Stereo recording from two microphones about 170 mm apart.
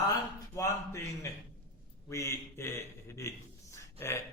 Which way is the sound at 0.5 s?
15° left (ahead or behind).